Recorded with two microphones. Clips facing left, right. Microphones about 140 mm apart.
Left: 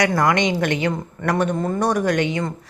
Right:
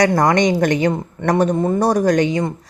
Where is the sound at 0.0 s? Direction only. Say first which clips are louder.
Right 4 dB; 40° right (ahead or behind).